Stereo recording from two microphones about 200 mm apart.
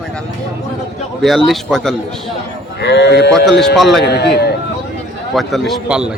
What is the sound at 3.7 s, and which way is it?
Speech, centre (ahead or behind).